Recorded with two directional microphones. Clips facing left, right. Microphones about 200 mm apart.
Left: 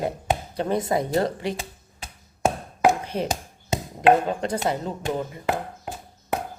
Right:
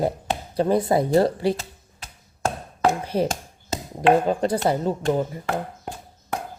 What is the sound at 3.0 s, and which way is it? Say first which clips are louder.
Speech: right 4 dB; 35° right (ahead or behind).